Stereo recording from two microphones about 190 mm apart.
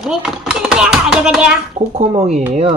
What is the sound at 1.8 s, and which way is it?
Speech, 35° right (ahead or behind).